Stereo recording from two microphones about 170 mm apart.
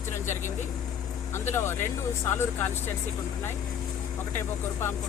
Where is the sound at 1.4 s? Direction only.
15° left (ahead or behind).